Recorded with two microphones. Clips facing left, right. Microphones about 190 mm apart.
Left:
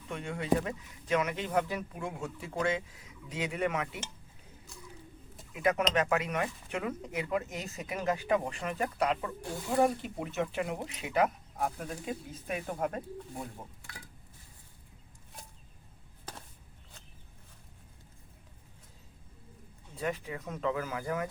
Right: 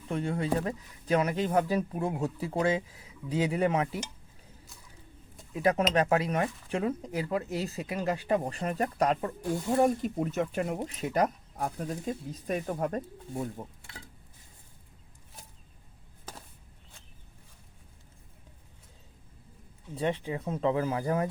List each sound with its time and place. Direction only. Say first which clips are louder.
0.1 s speech: right 2 dB; 35° right (ahead or behind)
5.5 s speech: right 3 dB; 35° right (ahead or behind)
13.8 s a sound: right 1 dB; 25° right (ahead or behind)
20.0 s speech: right 5 dB; 30° right (ahead or behind)